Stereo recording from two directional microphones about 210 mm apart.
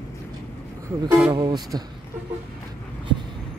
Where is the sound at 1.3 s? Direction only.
20° right (ahead or behind).